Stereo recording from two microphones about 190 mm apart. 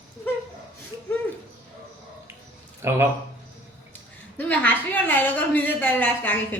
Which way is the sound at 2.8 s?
15° right (ahead or behind).